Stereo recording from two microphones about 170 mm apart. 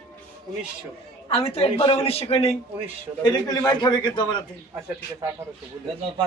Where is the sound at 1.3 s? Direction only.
35° left (ahead or behind).